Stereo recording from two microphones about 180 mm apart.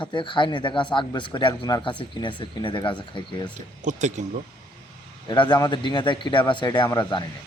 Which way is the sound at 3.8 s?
40° right (ahead or behind).